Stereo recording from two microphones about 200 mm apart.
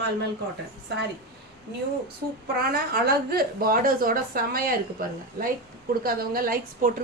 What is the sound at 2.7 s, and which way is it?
A woman's voice, 50° right (ahead or behind).